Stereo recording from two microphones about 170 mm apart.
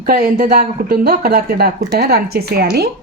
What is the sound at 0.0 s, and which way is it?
Speech, 55° right (ahead or behind).